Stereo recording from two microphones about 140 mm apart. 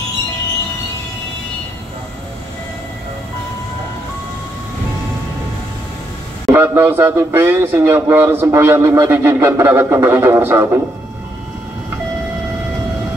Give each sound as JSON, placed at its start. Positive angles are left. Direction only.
{"t": 6.5, "sound": "speech", "side_deg": -15}